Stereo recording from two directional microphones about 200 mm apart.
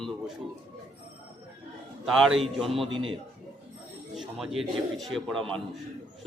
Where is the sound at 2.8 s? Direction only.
25° right (ahead or behind).